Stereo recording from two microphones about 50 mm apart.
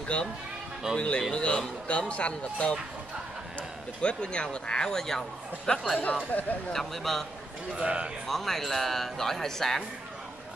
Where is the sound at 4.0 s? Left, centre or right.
Left.